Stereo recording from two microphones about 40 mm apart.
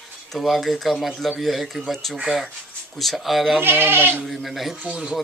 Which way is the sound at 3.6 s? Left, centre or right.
Right.